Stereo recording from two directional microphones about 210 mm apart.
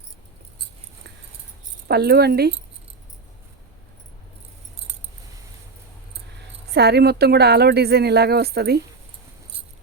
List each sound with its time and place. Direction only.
1.9 s speech: 50° right (ahead or behind)
6.7 s speech: 50° right (ahead or behind)